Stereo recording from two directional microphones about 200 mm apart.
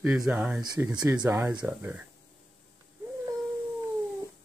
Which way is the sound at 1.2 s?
10° right (ahead or behind).